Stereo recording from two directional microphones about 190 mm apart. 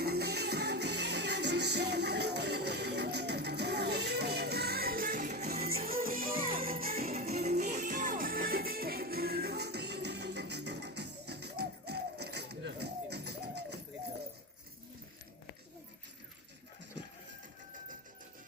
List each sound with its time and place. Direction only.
0.0 s music: 55° right (ahead or behind); by 5.5 s 40° right (ahead or behind)
5.5 s music: 55° right (ahead or behind)
7.3 s music: 35° right (ahead or behind); by 13.7 s 60° right (ahead or behind)